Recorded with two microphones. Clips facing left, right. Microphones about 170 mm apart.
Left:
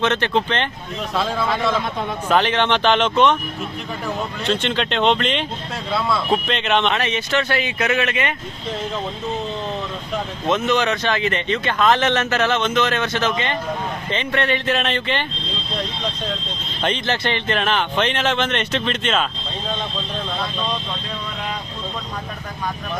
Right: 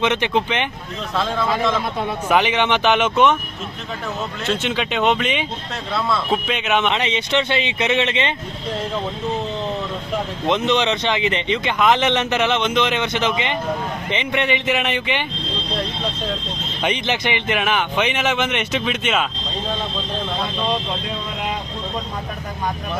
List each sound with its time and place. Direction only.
0.0 s speech: 15° right (ahead or behind)
1.1 s speech: 5° left (ahead or behind)
2.0 s speech: 10° right (ahead or behind)
4.4 s speech: 5° right (ahead or behind)
6.9 s speech: 20° right (ahead or behind)
10.4 s speech: 20° right (ahead or behind)
16.8 s speech: 15° right (ahead or behind)